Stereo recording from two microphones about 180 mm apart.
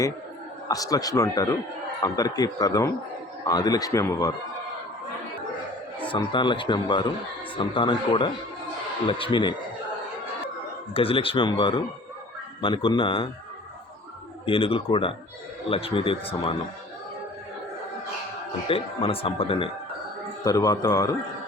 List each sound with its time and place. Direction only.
0.7 s speech: 20° left (ahead or behind)
6.1 s speech: 25° left (ahead or behind)
10.9 s speech: 30° left (ahead or behind)
14.4 s speech: 30° left (ahead or behind)
18.7 s speech: 30° left (ahead or behind)